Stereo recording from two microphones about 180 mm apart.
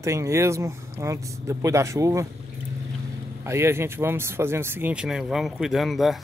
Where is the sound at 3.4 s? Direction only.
15° right (ahead or behind).